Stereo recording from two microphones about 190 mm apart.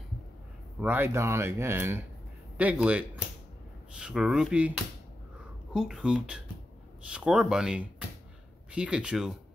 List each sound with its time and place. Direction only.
0.7 s speech: 10° right (ahead or behind)